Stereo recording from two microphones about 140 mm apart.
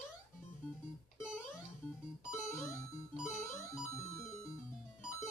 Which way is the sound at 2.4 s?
20° left (ahead or behind).